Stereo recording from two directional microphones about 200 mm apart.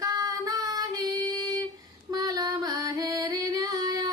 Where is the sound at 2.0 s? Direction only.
20° right (ahead or behind).